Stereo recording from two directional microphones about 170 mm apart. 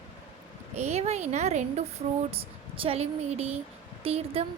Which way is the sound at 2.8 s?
35° right (ahead or behind).